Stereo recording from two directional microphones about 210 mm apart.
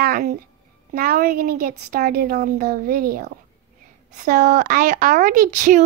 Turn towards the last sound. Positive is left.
turn(degrees=-35)  # may be behind; listen again after turning